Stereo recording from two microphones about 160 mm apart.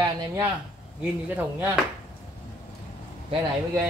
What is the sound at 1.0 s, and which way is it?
Speech, 10° right (ahead or behind).